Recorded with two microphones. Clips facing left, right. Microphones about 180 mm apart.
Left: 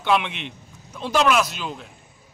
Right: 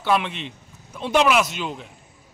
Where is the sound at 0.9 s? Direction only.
5° right (ahead or behind).